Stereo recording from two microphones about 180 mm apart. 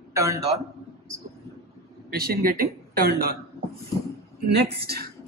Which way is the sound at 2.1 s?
55° right (ahead or behind).